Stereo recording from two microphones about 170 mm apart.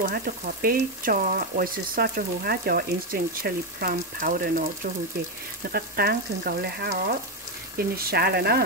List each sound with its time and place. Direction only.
0.1 s speech: 60° right (ahead or behind)
5.7 s speech: 65° right (ahead or behind)